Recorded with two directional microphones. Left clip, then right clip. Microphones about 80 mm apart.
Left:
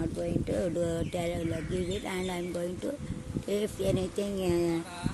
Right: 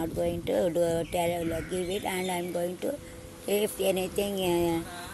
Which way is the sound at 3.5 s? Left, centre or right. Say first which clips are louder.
Right 4 dB; left.